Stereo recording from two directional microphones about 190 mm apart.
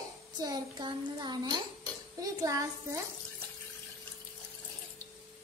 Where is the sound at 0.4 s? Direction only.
20° right (ahead or behind).